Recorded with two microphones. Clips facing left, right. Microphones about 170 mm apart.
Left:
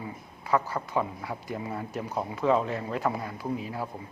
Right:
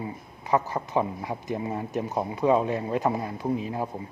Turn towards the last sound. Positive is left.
turn(degrees=-20)  # may be behind; listen again after turning